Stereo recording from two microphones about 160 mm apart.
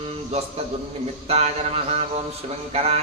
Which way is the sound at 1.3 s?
40° right (ahead or behind).